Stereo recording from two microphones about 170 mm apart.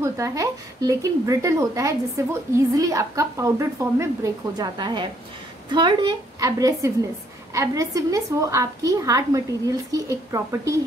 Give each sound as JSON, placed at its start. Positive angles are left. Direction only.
{"t": 0.0, "sound": "speech", "side_deg": -20}